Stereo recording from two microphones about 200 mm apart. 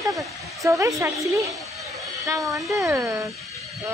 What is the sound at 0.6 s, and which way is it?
Speech, 15° right (ahead or behind).